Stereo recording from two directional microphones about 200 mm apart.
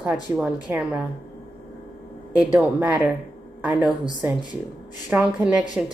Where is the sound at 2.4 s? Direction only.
5° right (ahead or behind).